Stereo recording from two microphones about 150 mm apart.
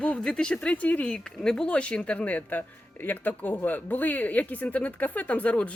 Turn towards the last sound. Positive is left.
turn(degrees=10)  # may be behind; listen again after turning